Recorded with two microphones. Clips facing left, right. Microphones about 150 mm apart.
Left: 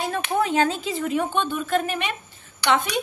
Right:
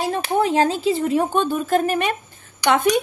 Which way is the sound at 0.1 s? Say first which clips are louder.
Right 3 dB; 30° right (ahead or behind).